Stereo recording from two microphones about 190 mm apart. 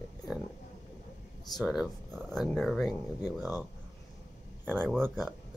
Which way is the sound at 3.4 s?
10° right (ahead or behind).